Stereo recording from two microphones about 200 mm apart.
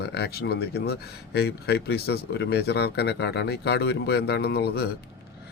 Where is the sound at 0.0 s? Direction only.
55° left (ahead or behind).